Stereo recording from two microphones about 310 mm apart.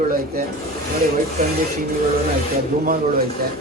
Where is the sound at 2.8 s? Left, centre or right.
Right.